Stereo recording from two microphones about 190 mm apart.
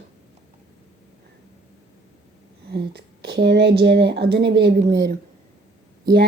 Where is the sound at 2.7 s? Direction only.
60° right (ahead or behind).